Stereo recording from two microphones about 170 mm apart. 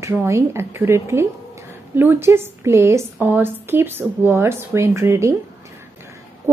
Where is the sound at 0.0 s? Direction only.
15° right (ahead or behind).